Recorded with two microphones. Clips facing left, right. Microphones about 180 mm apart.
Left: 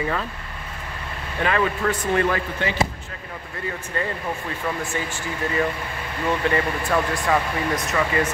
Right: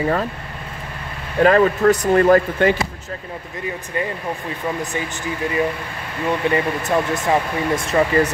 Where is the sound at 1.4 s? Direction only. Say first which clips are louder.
Right 9 dB; 40° right (ahead or behind).